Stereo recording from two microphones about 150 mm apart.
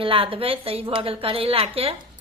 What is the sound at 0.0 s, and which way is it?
A woman's voice, 35° right (ahead or behind).